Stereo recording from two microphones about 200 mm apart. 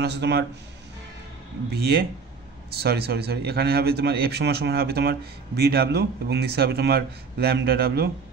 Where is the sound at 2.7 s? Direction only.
55° right (ahead or behind).